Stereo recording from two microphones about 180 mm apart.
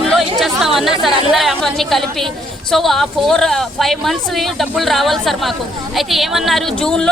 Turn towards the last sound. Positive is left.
turn(degrees=5)  # may be behind; listen again after turning